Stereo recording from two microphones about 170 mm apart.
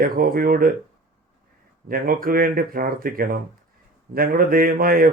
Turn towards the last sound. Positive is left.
turn(degrees=-60)  # may be behind; listen again after turning